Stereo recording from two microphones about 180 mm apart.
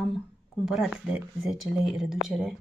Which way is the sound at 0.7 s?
5° right (ahead or behind).